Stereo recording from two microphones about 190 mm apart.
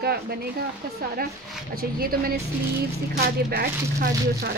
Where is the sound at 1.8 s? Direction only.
50° right (ahead or behind).